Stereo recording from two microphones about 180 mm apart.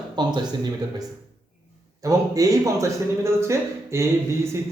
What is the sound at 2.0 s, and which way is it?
A man's voice, 20° right (ahead or behind).